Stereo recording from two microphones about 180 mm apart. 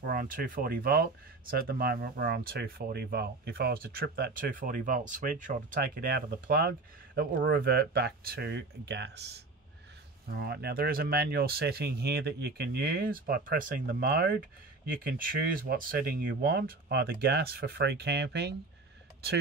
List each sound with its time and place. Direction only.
0.0 s speech: 50° right (ahead or behind); by 9.2 s 70° right (ahead or behind)
10.3 s speech: 60° right (ahead or behind)